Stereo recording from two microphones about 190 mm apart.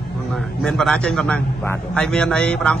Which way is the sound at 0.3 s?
5° left (ahead or behind).